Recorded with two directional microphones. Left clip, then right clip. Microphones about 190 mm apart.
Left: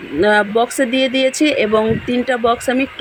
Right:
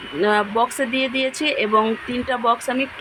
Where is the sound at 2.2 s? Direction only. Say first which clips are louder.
Left 3 dB; 45° left (ahead or behind).